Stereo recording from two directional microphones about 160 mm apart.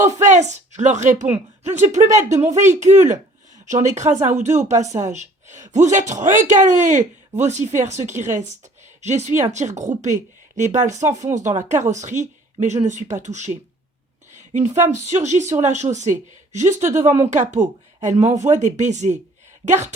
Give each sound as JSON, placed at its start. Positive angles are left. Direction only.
{"t": 0.2, "sound": "a woman's voice", "side_deg": -45}